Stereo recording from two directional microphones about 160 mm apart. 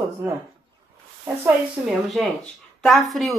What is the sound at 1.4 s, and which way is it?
A woman's voice, centre (ahead or behind).